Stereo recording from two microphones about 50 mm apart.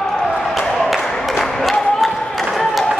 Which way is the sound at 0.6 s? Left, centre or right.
Centre.